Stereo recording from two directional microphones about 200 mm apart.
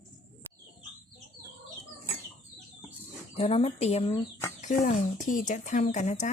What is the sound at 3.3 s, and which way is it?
Speech, 30° left (ahead or behind).